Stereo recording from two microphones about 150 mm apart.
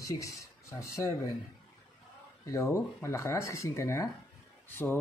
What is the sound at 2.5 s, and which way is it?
Speech, 20° left (ahead or behind).